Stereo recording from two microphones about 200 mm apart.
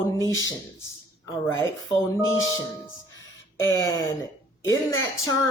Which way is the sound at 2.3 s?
75° left (ahead or behind).